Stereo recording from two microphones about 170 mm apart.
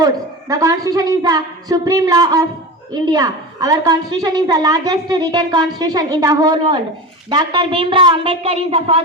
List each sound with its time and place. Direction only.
0.0 s a woman's voice: 20° right (ahead or behind)